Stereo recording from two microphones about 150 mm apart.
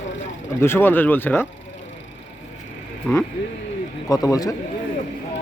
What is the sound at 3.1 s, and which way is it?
Speech, 5° left (ahead or behind).